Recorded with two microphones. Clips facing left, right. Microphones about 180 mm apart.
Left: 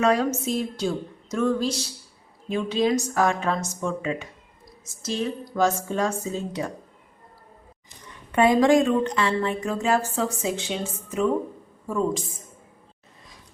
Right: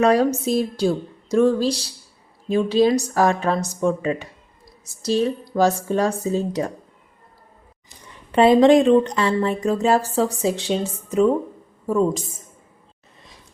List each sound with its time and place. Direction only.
0.0 s a woman's voice: 35° right (ahead or behind)
8.3 s a woman's voice: 30° right (ahead or behind)